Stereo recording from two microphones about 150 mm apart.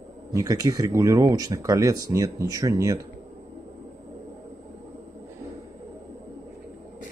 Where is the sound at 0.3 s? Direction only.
25° right (ahead or behind).